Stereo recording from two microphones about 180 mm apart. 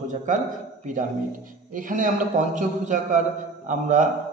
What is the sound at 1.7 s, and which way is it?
A man's voice, 45° right (ahead or behind).